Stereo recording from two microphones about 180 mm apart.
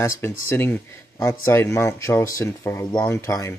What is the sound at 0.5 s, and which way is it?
Speech, 10° left (ahead or behind).